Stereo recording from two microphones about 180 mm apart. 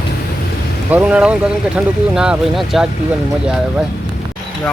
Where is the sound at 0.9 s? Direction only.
10° right (ahead or behind).